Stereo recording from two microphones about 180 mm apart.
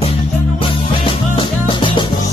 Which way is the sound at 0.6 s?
30° left (ahead or behind).